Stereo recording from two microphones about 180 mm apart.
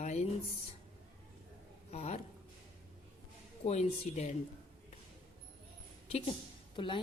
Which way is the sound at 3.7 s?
40° left (ahead or behind).